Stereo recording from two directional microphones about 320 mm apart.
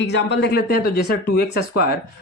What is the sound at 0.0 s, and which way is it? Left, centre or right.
Speech, left.